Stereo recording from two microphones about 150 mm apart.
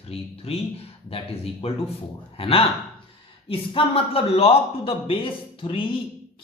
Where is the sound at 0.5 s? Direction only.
40° left (ahead or behind).